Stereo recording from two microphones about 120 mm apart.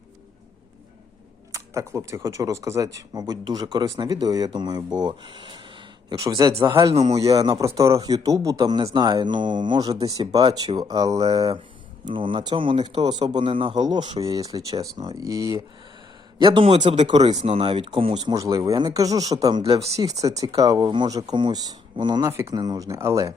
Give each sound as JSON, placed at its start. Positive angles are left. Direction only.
{"t": 1.5, "sound": "speech", "side_deg": -25}
{"t": 6.9, "sound": "speech", "side_deg": -60}
{"t": 7.2, "sound": "speech", "side_deg": -30}
{"t": 12.1, "sound": "speech", "side_deg": -45}
{"t": 16.4, "sound": "speech", "side_deg": -45}
{"t": 17.4, "sound": "speech", "side_deg": -50}
{"t": 18.2, "sound": "speech", "side_deg": -35}
{"t": 20.0, "sound": "speech", "side_deg": -30}